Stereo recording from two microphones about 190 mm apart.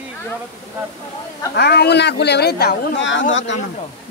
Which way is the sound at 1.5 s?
60° left (ahead or behind).